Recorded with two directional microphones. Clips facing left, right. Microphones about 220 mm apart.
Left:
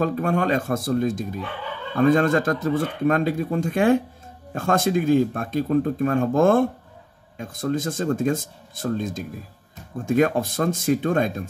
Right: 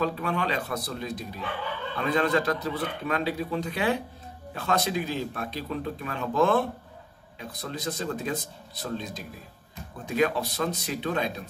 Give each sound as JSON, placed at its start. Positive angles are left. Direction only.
{"t": 0.0, "sound": "speech", "side_deg": 45}